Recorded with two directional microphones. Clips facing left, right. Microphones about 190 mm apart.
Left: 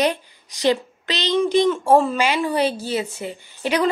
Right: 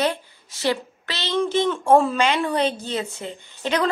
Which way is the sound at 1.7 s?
5° left (ahead or behind).